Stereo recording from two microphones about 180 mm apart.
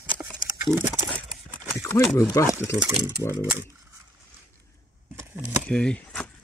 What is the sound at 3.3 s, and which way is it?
Speech, 20° right (ahead or behind).